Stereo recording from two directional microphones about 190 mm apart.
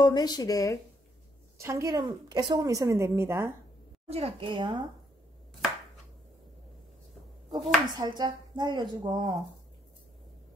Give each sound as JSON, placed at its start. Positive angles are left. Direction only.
{"t": 0.0, "sound": "speech", "side_deg": 20}
{"t": 1.6, "sound": "a woman's voice", "side_deg": -15}
{"t": 4.1, "sound": "speech", "side_deg": -30}
{"t": 7.5, "sound": "speech", "side_deg": -25}